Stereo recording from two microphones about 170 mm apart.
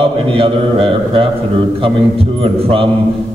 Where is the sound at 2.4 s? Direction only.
35° right (ahead or behind).